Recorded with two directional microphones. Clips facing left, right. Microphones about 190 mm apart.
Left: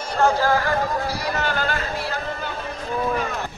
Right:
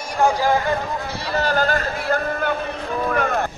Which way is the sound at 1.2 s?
35° right (ahead or behind).